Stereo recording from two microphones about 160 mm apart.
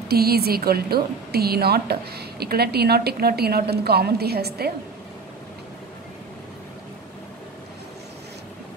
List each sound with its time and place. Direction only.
0.1 s a woman's voice: 75° right (ahead or behind)